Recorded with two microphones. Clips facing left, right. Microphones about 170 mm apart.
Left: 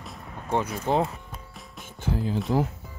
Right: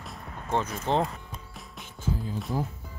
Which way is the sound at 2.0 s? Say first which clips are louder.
Left 5 dB; 75° left (ahead or behind).